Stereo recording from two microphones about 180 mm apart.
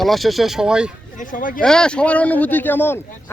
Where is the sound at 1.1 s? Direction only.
50° left (ahead or behind).